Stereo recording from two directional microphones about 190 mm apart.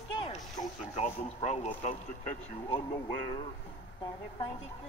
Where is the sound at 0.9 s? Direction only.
35° left (ahead or behind).